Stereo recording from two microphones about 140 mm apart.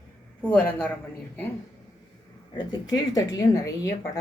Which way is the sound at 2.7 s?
30° left (ahead or behind).